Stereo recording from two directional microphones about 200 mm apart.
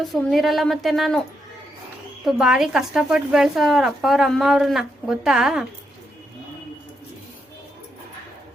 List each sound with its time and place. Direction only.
0.0 s a woman's voice: centre (ahead or behind)
2.2 s a woman's voice: 5° right (ahead or behind)